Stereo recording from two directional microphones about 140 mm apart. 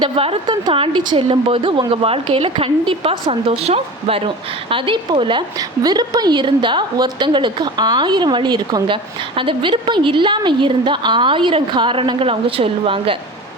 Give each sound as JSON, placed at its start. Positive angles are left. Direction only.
{"t": 0.0, "sound": "speech", "side_deg": -45}
{"t": 0.4, "sound": "a woman's voice", "side_deg": -30}